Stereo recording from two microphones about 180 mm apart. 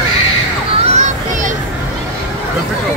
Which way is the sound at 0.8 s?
40° right (ahead or behind).